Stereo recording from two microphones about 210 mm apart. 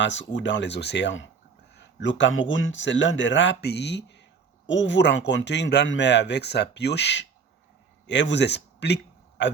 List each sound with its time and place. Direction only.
0.0 s speech: 60° left (ahead or behind)